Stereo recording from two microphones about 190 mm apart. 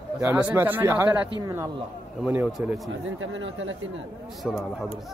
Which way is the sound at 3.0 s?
90° right.